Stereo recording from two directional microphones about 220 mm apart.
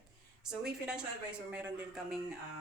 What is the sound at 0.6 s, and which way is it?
Speech, 5° right (ahead or behind).